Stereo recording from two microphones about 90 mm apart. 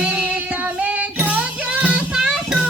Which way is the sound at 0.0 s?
15° right (ahead or behind).